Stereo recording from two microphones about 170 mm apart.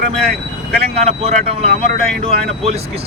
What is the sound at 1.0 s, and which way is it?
Speech, 40° right (ahead or behind).